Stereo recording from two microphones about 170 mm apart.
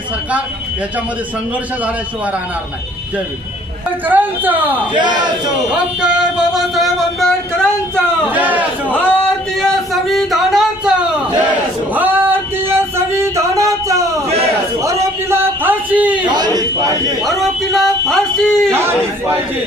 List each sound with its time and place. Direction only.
4.0 s speech: 10° right (ahead or behind)
4.9 s a man's voice: 25° right (ahead or behind)
6.0 s speech: 5° right (ahead or behind)
8.3 s speech: 10° right (ahead or behind)
8.9 s speech: 5° left (ahead or behind)
11.9 s a sound: 10° right (ahead or behind)
15.3 s a sound: 10° right (ahead or behind)
16.3 s a man's voice: 25° right (ahead or behind)
17.2 s speech: centre (ahead or behind)
18.7 s speech: 15° right (ahead or behind)